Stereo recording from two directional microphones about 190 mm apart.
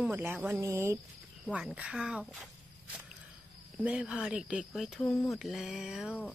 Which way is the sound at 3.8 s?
5° right (ahead or behind).